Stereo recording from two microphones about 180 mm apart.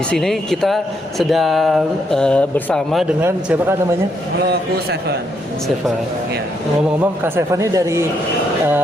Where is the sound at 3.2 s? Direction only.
15° right (ahead or behind).